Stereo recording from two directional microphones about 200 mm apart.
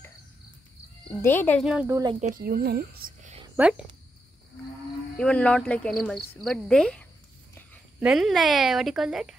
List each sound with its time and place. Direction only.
1.0 s speech: 10° left (ahead or behind)
1.6 s speech: 5° right (ahead or behind)
1.9 s speech: 15° right (ahead or behind)
2.1 s a woman's voice: 40° right (ahead or behind)
3.5 s speech: 5° right (ahead or behind)
5.1 s speech: 5° left (ahead or behind)